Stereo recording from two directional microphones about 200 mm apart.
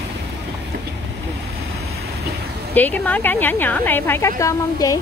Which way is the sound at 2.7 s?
10° left (ahead or behind).